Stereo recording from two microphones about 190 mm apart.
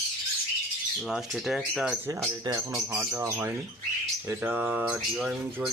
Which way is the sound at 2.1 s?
15° right (ahead or behind).